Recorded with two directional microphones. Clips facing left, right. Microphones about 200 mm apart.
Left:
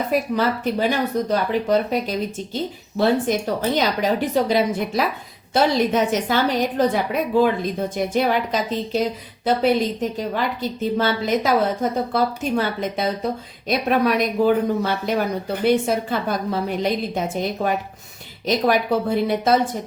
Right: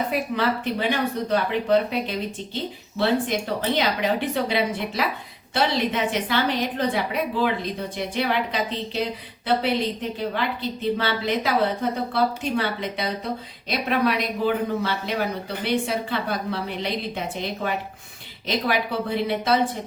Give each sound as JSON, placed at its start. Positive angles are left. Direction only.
{"t": 0.1, "sound": "speech", "side_deg": 40}
{"t": 3.0, "sound": "speech", "side_deg": 45}